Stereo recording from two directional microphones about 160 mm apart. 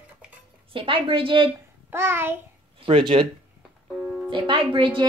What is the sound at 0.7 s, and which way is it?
Speech, 35° right (ahead or behind).